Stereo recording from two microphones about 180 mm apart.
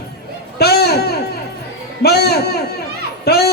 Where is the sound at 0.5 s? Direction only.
60° left (ahead or behind).